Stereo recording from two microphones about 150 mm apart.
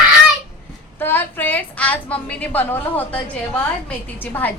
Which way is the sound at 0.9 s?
15° left (ahead or behind).